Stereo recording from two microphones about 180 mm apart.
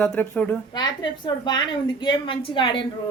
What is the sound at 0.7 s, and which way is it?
A man's voice, 25° left (ahead or behind).